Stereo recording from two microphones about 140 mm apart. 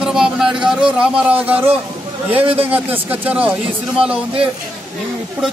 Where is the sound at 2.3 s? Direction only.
45° right (ahead or behind).